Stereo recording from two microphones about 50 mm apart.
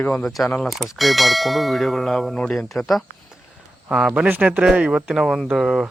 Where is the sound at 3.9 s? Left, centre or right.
Centre.